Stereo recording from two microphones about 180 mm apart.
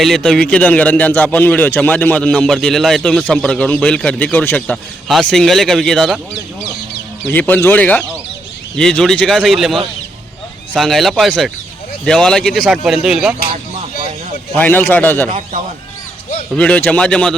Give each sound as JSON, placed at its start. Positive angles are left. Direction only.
{"t": 0.0, "sound": "a man's voice", "side_deg": 0}
{"t": 7.3, "sound": "a man's voice", "side_deg": 10}
{"t": 14.5, "sound": "a man's voice", "side_deg": 10}
{"t": 15.3, "sound": "a man's voice", "side_deg": -45}
{"t": 16.6, "sound": "a man's voice", "side_deg": 5}